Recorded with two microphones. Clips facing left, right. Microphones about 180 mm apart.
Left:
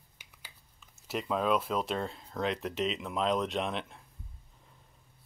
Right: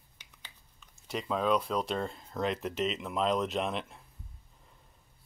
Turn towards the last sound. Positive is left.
turn(degrees=0)  # may be behind; listen again after turning